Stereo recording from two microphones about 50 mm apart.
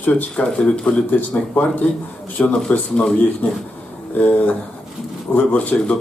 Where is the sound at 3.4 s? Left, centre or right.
Left.